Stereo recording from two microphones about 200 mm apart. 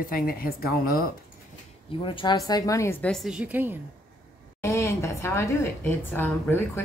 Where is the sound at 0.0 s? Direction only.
45° left (ahead or behind).